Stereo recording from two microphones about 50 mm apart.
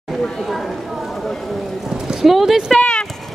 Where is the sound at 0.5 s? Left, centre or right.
Centre.